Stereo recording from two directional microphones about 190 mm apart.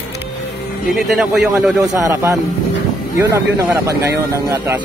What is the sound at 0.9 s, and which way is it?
Speech, centre (ahead or behind).